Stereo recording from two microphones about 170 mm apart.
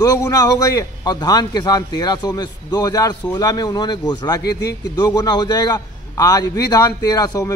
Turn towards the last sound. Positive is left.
turn(degrees=20)  # may be behind; listen again after turning